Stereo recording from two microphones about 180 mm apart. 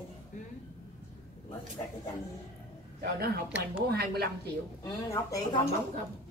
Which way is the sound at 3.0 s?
60° right (ahead or behind).